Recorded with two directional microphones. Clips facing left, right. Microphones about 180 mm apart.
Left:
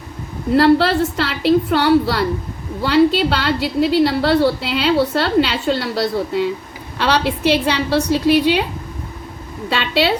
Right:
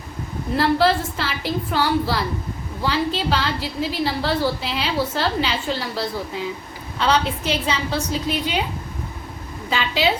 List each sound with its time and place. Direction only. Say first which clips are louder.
0.5 s a woman's voice: left 5 dB; 70° left (ahead or behind)
9.6 s a woman's voice: left 4 dB; 70° left (ahead or behind)